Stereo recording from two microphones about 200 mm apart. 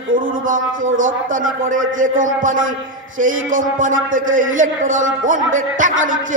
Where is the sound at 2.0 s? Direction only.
40° right (ahead or behind).